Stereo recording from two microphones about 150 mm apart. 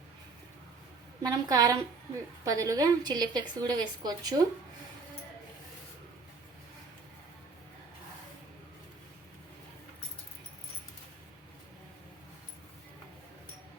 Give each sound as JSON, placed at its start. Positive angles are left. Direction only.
{"t": 1.2, "sound": "a woman's voice", "side_deg": -25}